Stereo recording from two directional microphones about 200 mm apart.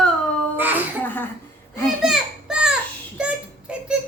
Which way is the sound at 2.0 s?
Centre (ahead or behind).